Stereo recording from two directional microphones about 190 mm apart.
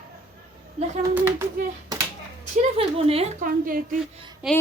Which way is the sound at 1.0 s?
10° right (ahead or behind).